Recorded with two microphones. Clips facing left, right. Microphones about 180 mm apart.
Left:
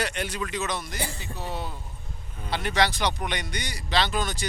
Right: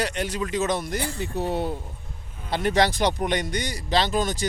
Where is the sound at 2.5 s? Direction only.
45° right (ahead or behind).